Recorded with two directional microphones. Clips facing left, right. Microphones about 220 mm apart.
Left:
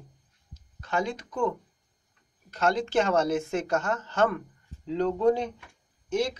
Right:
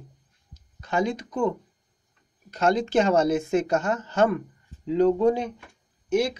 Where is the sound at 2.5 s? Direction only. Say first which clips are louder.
Right 3 dB; 20° right (ahead or behind).